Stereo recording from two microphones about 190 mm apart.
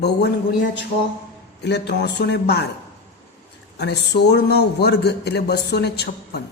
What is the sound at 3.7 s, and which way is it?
A man's voice, 60° left (ahead or behind).